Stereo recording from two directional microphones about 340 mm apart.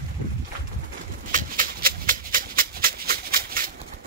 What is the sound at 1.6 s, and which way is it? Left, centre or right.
Music, right.